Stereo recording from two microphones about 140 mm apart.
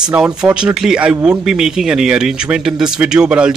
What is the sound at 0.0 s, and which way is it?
Speech, 5° right (ahead or behind).